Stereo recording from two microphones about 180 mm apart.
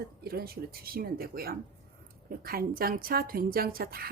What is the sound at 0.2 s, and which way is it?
A woman's voice, 60° right (ahead or behind).